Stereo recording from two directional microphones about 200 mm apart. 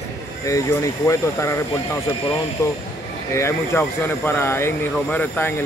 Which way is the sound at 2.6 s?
15° left (ahead or behind).